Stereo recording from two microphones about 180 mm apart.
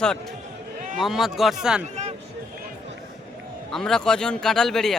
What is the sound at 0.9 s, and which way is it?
Speech, centre (ahead or behind).